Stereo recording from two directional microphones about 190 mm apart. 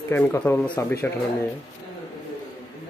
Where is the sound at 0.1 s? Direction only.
10° left (ahead or behind).